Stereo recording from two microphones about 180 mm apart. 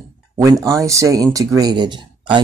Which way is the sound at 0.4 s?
20° right (ahead or behind).